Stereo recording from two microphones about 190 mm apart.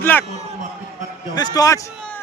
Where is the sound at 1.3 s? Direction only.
20° left (ahead or behind).